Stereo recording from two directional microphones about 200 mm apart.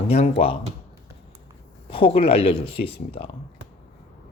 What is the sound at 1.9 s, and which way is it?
Speech, 25° left (ahead or behind).